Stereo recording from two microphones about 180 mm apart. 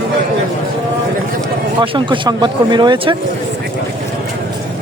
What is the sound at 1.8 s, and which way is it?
Speech, 25° right (ahead or behind).